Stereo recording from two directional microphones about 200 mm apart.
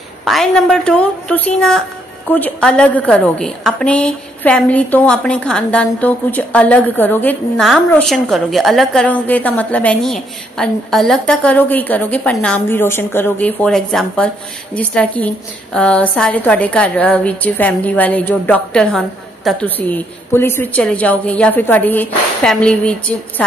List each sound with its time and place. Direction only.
0.2 s a woman's voice: centre (ahead or behind)